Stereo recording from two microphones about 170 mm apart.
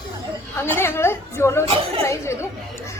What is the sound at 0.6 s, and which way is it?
A woman's voice, 15° left (ahead or behind).